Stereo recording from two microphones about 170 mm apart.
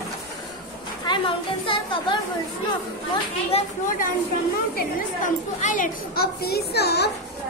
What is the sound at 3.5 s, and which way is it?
Speech, 35° left (ahead or behind).